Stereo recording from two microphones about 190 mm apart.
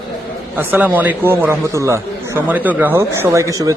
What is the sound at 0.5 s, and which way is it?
A man's voice, 10° right (ahead or behind).